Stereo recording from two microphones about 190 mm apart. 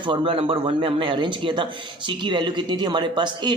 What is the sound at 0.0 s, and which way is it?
Speech, 25° right (ahead or behind).